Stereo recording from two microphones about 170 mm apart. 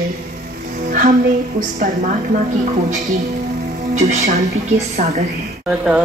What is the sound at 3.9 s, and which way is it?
Speech, 45° right (ahead or behind).